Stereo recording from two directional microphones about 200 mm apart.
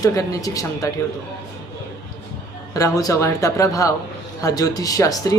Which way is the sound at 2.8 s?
15° left (ahead or behind).